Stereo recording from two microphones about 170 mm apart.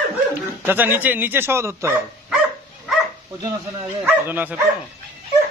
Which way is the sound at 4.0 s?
10° right (ahead or behind).